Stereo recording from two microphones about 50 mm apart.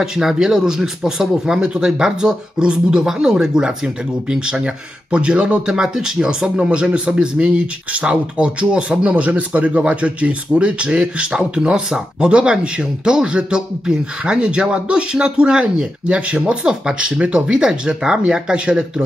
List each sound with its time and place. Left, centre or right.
0.0 s speech: centre